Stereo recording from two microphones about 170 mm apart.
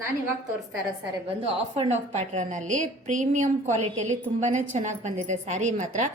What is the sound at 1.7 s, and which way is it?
A woman's voice, 40° right (ahead or behind).